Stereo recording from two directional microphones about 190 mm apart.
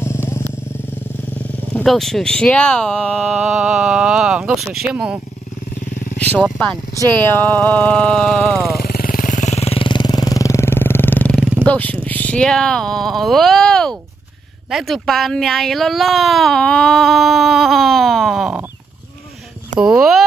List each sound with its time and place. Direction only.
0.0 s vehicle: 15° left (ahead or behind)
1.4 s wild animals: 5° left (ahead or behind)
1.8 s speech: centre (ahead or behind)
6.1 s speech: 10° left (ahead or behind)
8.7 s jackhammer: 50° left (ahead or behind); by 11.4 s 10° left (ahead or behind)
11.6 s speech: 5° left (ahead or behind)
19.8 s speech: 5° right (ahead or behind)